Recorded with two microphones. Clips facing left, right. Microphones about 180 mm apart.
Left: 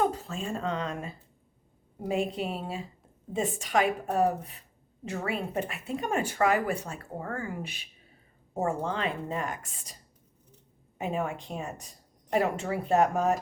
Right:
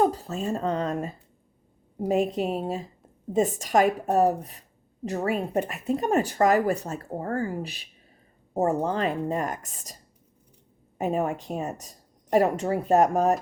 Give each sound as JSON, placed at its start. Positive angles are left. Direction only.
{"t": 0.0, "sound": "speech", "side_deg": -35}